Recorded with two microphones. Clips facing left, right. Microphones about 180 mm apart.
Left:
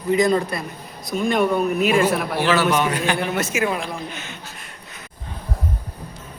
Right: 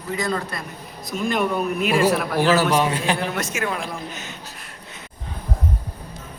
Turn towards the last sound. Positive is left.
turn(degrees=-40)  # may be behind; listen again after turning